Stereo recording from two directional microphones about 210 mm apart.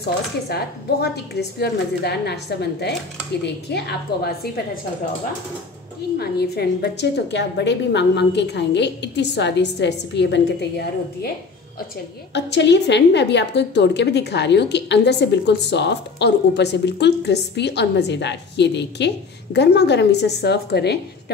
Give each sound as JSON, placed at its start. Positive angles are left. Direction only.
{"t": 0.5, "sound": "a woman's voice", "side_deg": 50}
{"t": 6.1, "sound": "a woman's voice", "side_deg": 50}
{"t": 12.4, "sound": "a woman's voice", "side_deg": 55}